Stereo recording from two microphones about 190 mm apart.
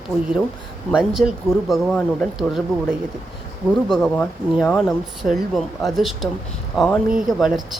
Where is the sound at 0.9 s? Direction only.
5° right (ahead or behind).